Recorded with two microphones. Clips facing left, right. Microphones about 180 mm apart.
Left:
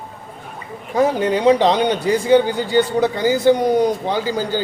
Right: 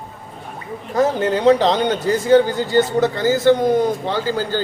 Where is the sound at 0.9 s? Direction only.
10° left (ahead or behind).